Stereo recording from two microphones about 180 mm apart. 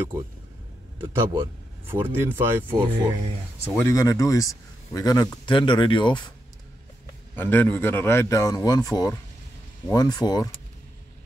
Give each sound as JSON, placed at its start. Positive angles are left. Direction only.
{"t": 0.9, "sound": "a man's voice", "side_deg": -25}
{"t": 1.9, "sound": "speech", "side_deg": -10}
{"t": 2.7, "sound": "a man's voice", "side_deg": -25}
{"t": 3.7, "sound": "speech", "side_deg": 20}
{"t": 7.3, "sound": "a man's voice", "side_deg": 10}